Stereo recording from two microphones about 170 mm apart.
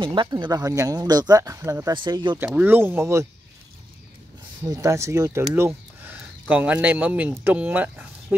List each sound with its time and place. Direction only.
0.0 s speech: 30° right (ahead or behind)
2.3 s speech: 10° right (ahead or behind)
4.6 s speech: 20° right (ahead or behind)